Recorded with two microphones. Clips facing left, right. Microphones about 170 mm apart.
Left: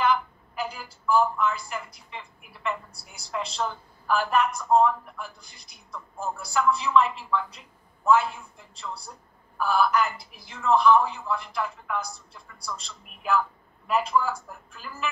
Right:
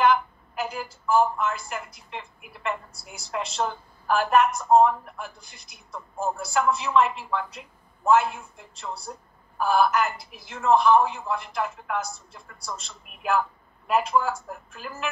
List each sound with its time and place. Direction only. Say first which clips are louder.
0.0 s a woman's voice: right 3 dB; 50° right (ahead or behind)